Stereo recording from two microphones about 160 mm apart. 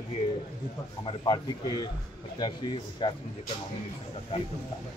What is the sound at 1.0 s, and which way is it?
A man's voice, 25° left (ahead or behind).